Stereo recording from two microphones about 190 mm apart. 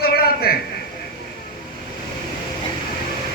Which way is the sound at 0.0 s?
55° left (ahead or behind).